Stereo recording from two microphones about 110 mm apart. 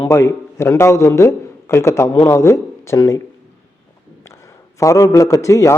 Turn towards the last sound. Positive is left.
turn(degrees=30)  # may be behind; listen again after turning